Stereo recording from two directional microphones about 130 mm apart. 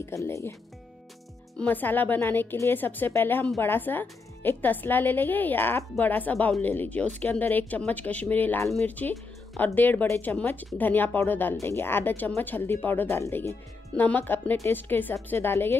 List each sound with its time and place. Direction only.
0.0 s speech: 20° left (ahead or behind)
1.6 s speech: 15° left (ahead or behind)